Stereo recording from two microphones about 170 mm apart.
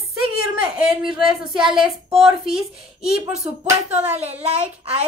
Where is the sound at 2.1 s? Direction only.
35° right (ahead or behind).